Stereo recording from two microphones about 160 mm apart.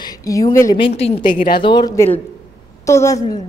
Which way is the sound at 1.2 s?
60° left (ahead or behind).